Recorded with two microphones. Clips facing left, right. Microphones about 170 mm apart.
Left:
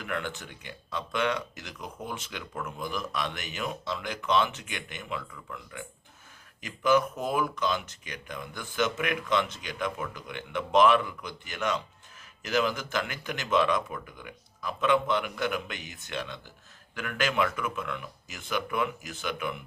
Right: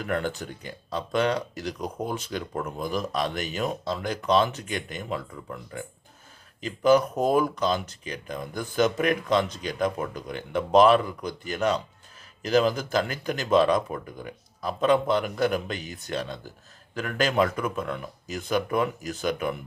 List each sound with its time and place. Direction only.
0.0 s speech: 40° right (ahead or behind)